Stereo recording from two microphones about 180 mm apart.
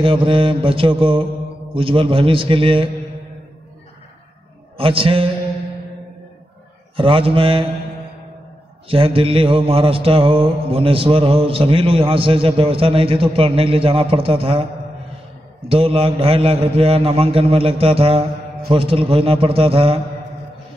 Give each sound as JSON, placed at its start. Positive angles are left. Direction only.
{"t": 0.0, "sound": "mantra", "side_deg": -30}
{"t": 4.7, "sound": "mantra", "side_deg": -30}
{"t": 7.0, "sound": "mantra", "side_deg": -30}
{"t": 8.8, "sound": "mantra", "side_deg": -30}
{"t": 15.7, "sound": "mantra", "side_deg": -30}